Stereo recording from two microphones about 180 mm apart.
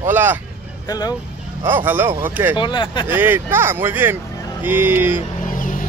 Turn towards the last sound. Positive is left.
turn(degrees=50)  # may be behind; listen again after turning